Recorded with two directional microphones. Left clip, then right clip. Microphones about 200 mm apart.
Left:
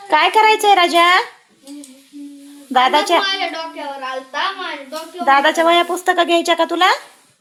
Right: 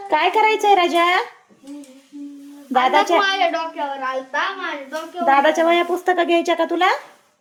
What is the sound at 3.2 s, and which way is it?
Speech, 45° right (ahead or behind).